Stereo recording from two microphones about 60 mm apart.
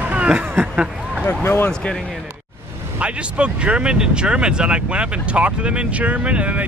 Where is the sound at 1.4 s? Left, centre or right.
Left.